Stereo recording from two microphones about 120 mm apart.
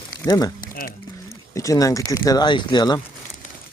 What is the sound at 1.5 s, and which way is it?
Speech, 25° left (ahead or behind).